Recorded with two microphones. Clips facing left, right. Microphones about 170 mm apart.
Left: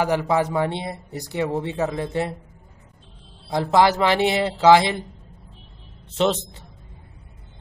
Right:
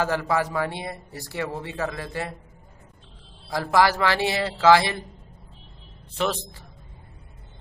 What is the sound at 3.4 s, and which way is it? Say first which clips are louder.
Speech: left 3 dB; 20° left (ahead or behind).